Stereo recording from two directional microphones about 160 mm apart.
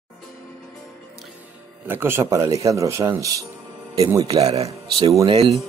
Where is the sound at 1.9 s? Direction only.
15° right (ahead or behind).